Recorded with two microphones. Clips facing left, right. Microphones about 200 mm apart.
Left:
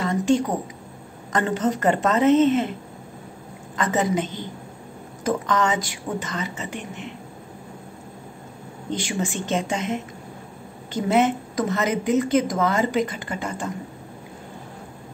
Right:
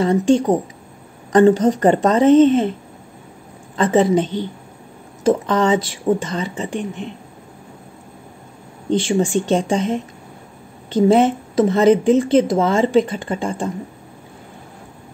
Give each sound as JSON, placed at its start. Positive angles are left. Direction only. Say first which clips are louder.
{"t": 0.0, "sound": "speech", "louder": "right 6 dB", "side_deg": -30}
{"t": 3.7, "sound": "speech", "louder": "right 8 dB", "side_deg": -30}
{"t": 9.0, "sound": "a woman's voice", "louder": "right 9 dB", "side_deg": -35}